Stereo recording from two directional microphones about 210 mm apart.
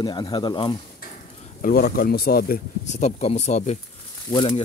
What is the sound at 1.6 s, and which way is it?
Speech, 40° left (ahead or behind).